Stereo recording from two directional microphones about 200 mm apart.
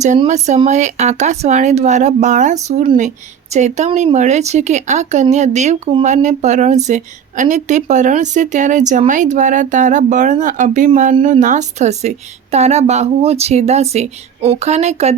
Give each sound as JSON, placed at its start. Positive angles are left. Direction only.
{"t": 0.3, "sound": "speech", "side_deg": -35}